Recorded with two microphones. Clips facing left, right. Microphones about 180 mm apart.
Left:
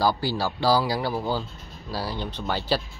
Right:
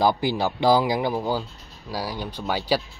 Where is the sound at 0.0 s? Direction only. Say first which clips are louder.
Right 3 dB; 20° right (ahead or behind).